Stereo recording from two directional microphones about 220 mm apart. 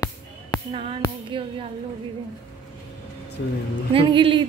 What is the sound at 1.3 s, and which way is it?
Speech, 20° right (ahead or behind).